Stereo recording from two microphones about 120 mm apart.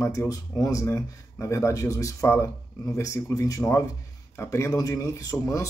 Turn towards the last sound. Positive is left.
turn(degrees=25)  # may be behind; listen again after turning